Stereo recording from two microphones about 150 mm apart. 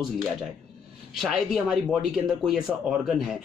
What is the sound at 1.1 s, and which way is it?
Speech, centre (ahead or behind).